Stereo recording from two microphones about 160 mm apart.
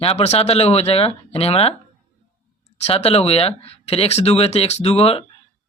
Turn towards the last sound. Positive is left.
turn(degrees=40)  # may be behind; listen again after turning